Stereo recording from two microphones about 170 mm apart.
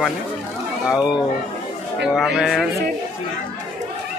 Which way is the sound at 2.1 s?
Centre (ahead or behind).